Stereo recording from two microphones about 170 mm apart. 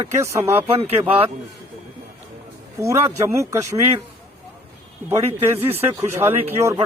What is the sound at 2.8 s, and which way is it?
Speech, 15° right (ahead or behind).